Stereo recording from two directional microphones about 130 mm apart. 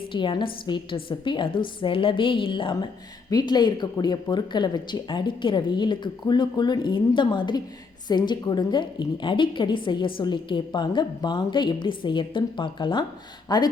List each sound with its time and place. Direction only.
0.1 s a woman's voice: 40° left (ahead or behind)